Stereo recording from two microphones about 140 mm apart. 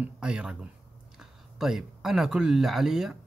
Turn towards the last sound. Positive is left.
turn(degrees=-5)  # may be behind; listen again after turning